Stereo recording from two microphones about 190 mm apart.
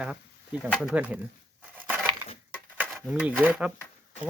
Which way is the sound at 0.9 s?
5° right (ahead or behind).